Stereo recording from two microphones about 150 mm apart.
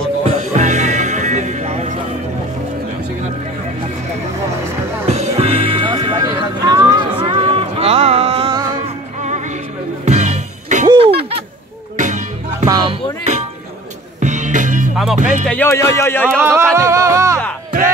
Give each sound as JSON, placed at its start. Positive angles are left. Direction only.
{"t": 0.2, "sound": "music", "side_deg": -45}
{"t": 5.0, "sound": "music", "side_deg": -45}
{"t": 6.2, "sound": "a sound", "side_deg": -25}
{"t": 8.8, "sound": "music", "side_deg": -50}
{"t": 10.9, "sound": "a sound", "side_deg": -40}
{"t": 12.0, "sound": "music", "side_deg": -55}
{"t": 12.6, "sound": "music", "side_deg": -25}
{"t": 14.2, "sound": "music", "side_deg": -55}
{"t": 15.4, "sound": "music", "side_deg": 10}
{"t": 16.3, "sound": "a sound", "side_deg": -15}
{"t": 16.7, "sound": "music", "side_deg": -20}